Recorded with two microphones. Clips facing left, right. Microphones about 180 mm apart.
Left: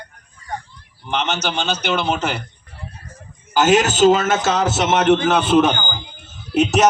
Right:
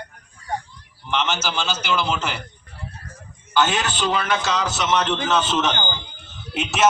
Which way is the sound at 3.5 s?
40° left (ahead or behind).